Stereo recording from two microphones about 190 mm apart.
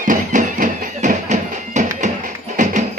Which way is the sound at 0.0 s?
45° right (ahead or behind).